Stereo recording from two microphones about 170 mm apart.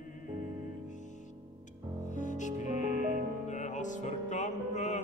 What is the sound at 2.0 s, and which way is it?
Music, 45° left (ahead or behind).